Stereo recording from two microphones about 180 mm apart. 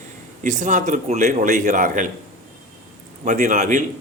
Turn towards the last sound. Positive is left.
turn(degrees=-45)  # may be behind; listen again after turning